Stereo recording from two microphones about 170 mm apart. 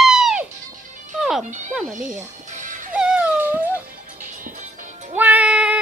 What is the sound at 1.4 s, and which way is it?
Speech, 45° right (ahead or behind).